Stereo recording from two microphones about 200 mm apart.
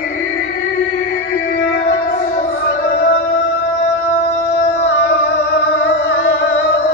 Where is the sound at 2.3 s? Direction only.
45° left (ahead or behind).